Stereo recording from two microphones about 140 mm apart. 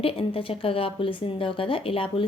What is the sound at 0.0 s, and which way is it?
A woman's voice, 40° left (ahead or behind).